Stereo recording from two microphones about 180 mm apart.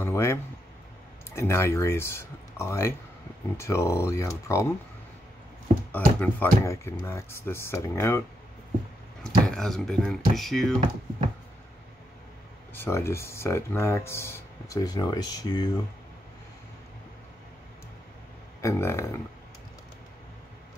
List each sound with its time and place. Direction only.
0.0 s a sound: 15° left (ahead or behind)
1.3 s speech: 15° left (ahead or behind)
5.9 s speech: 10° left (ahead or behind)
9.2 s speech: 5° left (ahead or behind)
12.7 s speech: 15° left (ahead or behind)
18.6 s speech: 15° left (ahead or behind)